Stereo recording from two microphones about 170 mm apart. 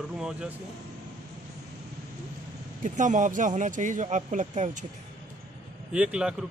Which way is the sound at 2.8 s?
45° right (ahead or behind).